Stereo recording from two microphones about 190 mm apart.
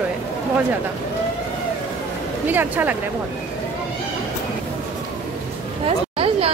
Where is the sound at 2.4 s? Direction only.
10° right (ahead or behind).